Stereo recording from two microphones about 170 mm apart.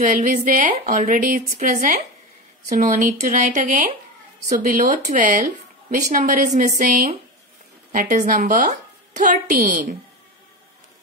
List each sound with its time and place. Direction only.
0.0 s a woman's voice: 50° right (ahead or behind)